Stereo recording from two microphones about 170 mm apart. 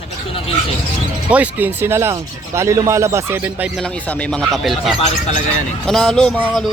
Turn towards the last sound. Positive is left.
turn(degrees=-5)  # may be behind; listen again after turning